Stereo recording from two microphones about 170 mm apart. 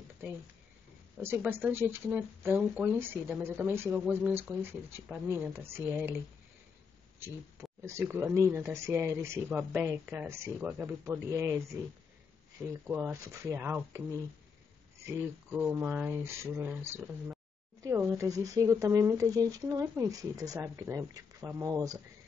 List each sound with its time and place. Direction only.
1.2 s speech: 15° right (ahead or behind)
7.8 s speech: 15° right (ahead or behind)
12.8 s speech: 10° right (ahead or behind)
15.5 s speech: 5° right (ahead or behind); by 22.0 s 20° right (ahead or behind)